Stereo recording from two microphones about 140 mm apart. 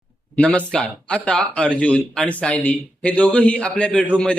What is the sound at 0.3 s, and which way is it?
Speech, 10° left (ahead or behind).